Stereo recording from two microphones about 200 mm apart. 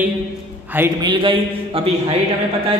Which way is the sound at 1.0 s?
25° right (ahead or behind).